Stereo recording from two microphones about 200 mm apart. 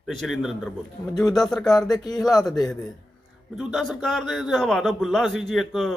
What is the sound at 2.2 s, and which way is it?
Speech, centre (ahead or behind).